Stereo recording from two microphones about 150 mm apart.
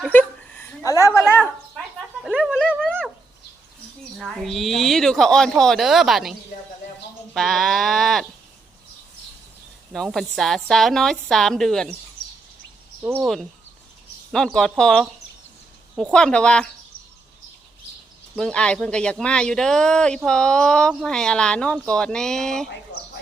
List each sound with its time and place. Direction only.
0.0 s a sound: 10° left (ahead or behind)
0.9 s a sound: 20° left (ahead or behind)
2.2 s dog: centre (ahead or behind)
4.2 s speech: centre (ahead or behind)
7.3 s speech: centre (ahead or behind)
9.9 s speech: centre (ahead or behind)
13.0 s speech: 15° right (ahead or behind)
13.2 s speech: centre (ahead or behind)
16.1 s speech: 5° left (ahead or behind)
18.3 s speech: 5° left (ahead or behind)